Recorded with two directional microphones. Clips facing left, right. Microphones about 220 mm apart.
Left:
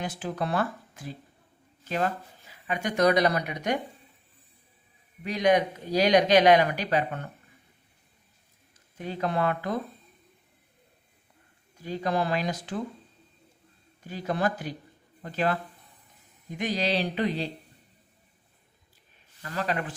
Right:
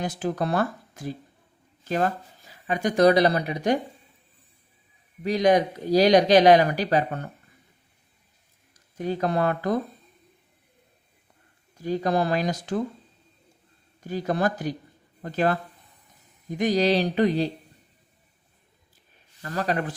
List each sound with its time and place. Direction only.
0.0 s speech: 40° right (ahead or behind)
2.6 s speech: 35° right (ahead or behind)
5.2 s speech: 35° right (ahead or behind)
9.0 s speech: 40° right (ahead or behind)
11.8 s speech: 40° right (ahead or behind)
14.1 s speech: 45° right (ahead or behind)
16.6 s speech: 40° right (ahead or behind)
19.4 s speech: 40° right (ahead or behind)